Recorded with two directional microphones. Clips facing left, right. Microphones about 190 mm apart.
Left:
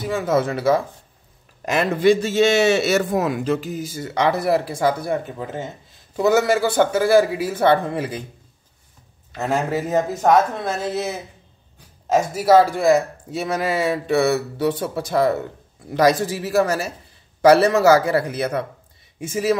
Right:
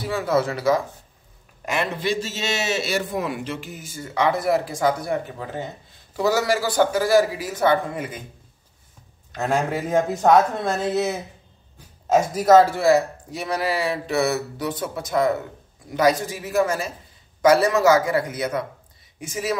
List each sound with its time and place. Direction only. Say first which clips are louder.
0.0 s speech: left 2 dB; 20° left (ahead or behind)
1.7 s a man's voice: left 8 dB; 45° left (ahead or behind)
9.3 s a man's voice: left 1 dB; 5° left (ahead or behind); by 19.5 s 25° left (ahead or behind)